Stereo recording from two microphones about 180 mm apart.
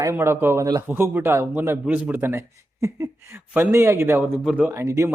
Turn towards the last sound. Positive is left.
turn(degrees=-15)  # may be behind; listen again after turning